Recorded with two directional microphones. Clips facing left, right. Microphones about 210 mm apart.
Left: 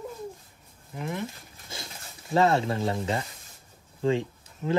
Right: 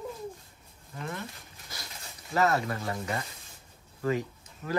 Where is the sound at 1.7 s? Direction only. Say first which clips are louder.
Left 4 dB; 25° left (ahead or behind).